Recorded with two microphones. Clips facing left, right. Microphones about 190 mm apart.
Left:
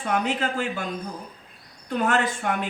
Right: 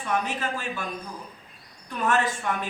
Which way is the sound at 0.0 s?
70° left (ahead or behind).